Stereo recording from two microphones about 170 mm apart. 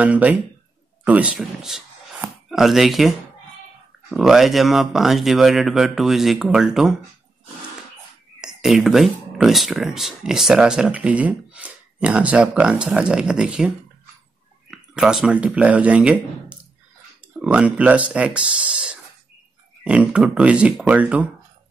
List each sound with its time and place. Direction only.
0.0 s speech: 10° right (ahead or behind)
8.4 s speech: 5° right (ahead or behind)
14.7 s speech: 5° right (ahead or behind)